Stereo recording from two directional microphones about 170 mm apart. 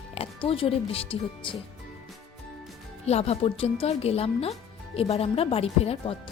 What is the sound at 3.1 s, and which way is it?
A woman's voice, 40° left (ahead or behind).